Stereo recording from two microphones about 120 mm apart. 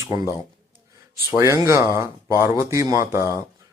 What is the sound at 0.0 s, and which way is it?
Speech, 30° right (ahead or behind).